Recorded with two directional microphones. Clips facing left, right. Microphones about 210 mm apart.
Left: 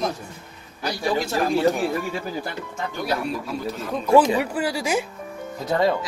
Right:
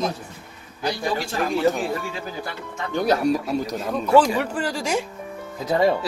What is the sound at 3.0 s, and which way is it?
Speech, 40° right (ahead or behind).